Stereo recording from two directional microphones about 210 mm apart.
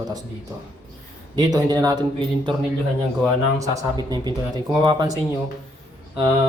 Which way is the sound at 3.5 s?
15° right (ahead or behind).